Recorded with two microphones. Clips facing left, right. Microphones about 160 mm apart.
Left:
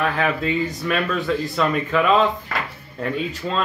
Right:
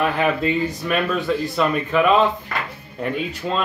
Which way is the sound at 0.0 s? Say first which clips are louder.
Right 2 dB; 5° right (ahead or behind).